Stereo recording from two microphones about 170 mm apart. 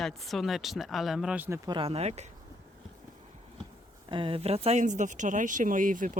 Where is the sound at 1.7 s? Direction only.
30° right (ahead or behind).